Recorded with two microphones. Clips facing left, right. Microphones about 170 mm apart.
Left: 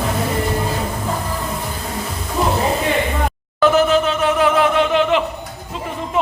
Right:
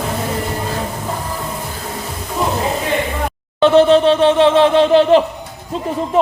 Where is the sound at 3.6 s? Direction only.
30° right (ahead or behind).